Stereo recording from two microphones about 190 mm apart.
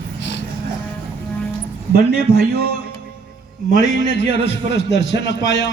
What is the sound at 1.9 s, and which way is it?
Speech, 55° right (ahead or behind).